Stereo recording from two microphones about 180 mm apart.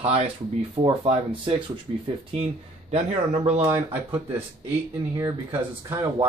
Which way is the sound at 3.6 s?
10° right (ahead or behind).